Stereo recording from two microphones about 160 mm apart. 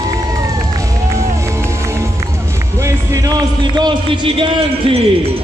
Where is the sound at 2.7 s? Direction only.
20° right (ahead or behind).